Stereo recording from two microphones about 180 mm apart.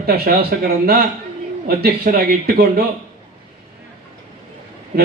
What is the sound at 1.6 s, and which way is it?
A man's voice, 60° right (ahead or behind).